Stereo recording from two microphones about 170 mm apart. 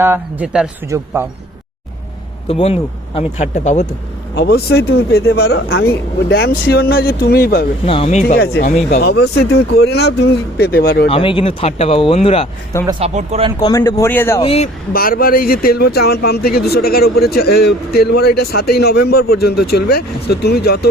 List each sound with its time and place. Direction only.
0.0 s speech: 10° right (ahead or behind)
0.9 s speech: 15° right (ahead or behind)
2.5 s speech: 35° left (ahead or behind)
4.4 s speech: 70° left (ahead or behind)
7.9 s speech: 35° left (ahead or behind)
8.6 s speech: 50° left (ahead or behind)
9.0 s speech: 70° left (ahead or behind)
11.1 s speech: 30° left (ahead or behind)
13.0 s speech: 40° right (ahead or behind)
13.6 s speech: 20° left (ahead or behind)
14.4 s speech: 35° left (ahead or behind)
14.9 s speech: 60° left (ahead or behind)